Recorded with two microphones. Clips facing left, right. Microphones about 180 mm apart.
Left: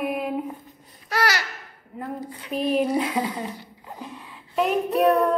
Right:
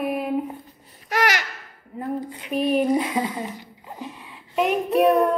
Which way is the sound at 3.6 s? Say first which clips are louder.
Right 2 dB; 10° right (ahead or behind).